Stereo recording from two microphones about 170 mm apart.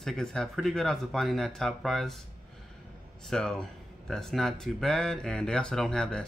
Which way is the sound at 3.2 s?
5° left (ahead or behind).